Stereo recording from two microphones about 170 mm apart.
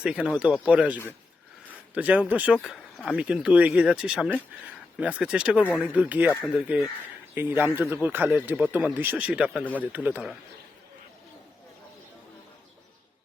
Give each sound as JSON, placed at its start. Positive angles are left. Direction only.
{"t": 0.0, "sound": "speech", "side_deg": -5}